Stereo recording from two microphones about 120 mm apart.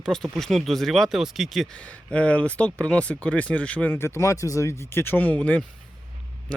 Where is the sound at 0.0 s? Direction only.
5° left (ahead or behind).